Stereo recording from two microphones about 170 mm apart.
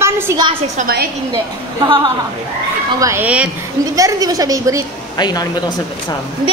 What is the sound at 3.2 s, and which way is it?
Speech, 5° right (ahead or behind).